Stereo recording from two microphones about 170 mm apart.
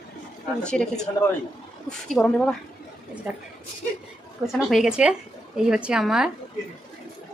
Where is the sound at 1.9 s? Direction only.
5° left (ahead or behind).